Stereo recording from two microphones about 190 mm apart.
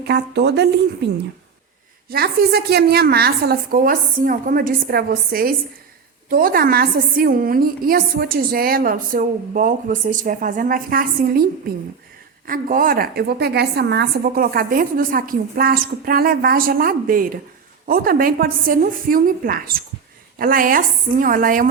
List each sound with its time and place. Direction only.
0.0 s a woman's voice: 60° right (ahead or behind)
2.0 s a woman's voice: 55° right (ahead or behind)
12.5 s a woman's voice: 45° right (ahead or behind)